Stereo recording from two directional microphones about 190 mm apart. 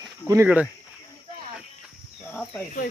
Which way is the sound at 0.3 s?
10° right (ahead or behind).